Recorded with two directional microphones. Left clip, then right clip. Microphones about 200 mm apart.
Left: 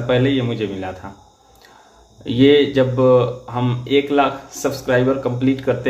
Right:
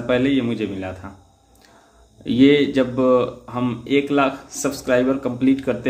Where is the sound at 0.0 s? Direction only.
20° right (ahead or behind).